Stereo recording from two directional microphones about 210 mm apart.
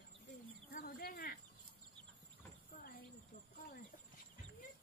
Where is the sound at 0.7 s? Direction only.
45° left (ahead or behind).